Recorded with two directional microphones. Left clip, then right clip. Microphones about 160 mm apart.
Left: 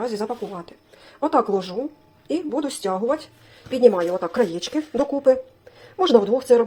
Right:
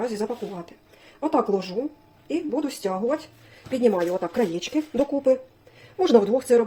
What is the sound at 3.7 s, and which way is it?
A woman's voice, 5° left (ahead or behind).